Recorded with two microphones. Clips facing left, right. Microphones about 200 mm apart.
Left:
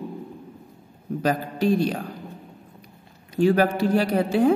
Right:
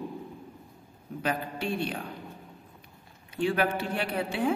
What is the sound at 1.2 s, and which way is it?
Speech, 40° left (ahead or behind).